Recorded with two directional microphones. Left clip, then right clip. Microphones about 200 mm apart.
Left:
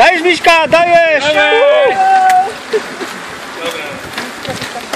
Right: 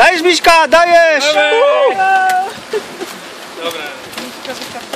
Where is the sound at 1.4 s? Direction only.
20° right (ahead or behind).